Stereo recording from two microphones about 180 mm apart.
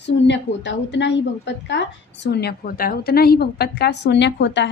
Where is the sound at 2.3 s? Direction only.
65° left (ahead or behind).